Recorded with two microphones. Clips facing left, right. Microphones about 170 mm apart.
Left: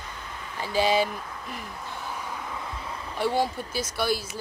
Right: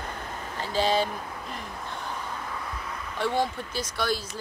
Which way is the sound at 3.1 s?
5° left (ahead or behind).